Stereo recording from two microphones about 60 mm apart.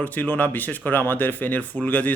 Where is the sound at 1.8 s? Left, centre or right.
Left.